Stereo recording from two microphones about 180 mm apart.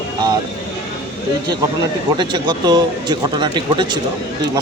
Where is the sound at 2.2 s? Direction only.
25° right (ahead or behind).